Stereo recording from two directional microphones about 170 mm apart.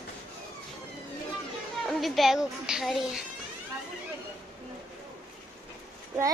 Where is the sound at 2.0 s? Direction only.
Centre (ahead or behind).